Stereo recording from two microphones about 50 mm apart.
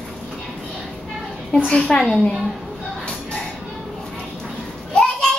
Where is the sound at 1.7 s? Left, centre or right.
Centre.